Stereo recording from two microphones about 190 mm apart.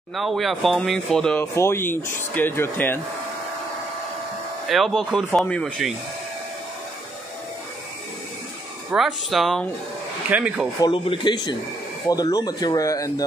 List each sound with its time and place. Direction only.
0.1 s speech: centre (ahead or behind)
4.6 s speech: centre (ahead or behind)
8.9 s speech: centre (ahead or behind)
10.8 s speech: 25° left (ahead or behind)